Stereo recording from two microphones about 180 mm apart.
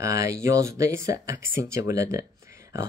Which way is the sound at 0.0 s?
15° right (ahead or behind).